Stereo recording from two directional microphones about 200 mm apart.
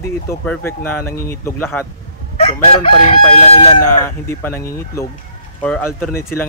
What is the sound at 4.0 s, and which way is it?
Speech, 15° left (ahead or behind).